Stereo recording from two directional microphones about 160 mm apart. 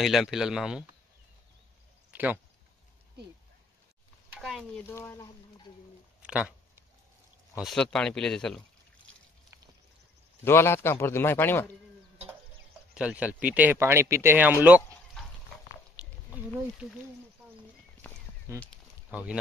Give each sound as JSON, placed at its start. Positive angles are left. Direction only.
{"t": 0.0, "sound": "speech", "side_deg": 0}
{"t": 2.1, "sound": "speech", "side_deg": -10}
{"t": 4.4, "sound": "speech", "side_deg": 0}
{"t": 4.8, "sound": "a man's voice", "side_deg": 15}
{"t": 6.2, "sound": "a sound", "side_deg": -5}
{"t": 7.5, "sound": "speech", "side_deg": 0}
{"t": 10.4, "sound": "a man's voice", "side_deg": 15}
{"t": 12.9, "sound": "speech", "side_deg": -10}
{"t": 18.0, "sound": "a sound", "side_deg": 10}
{"t": 18.5, "sound": "speech", "side_deg": -20}
{"t": 19.0, "sound": "speech", "side_deg": -5}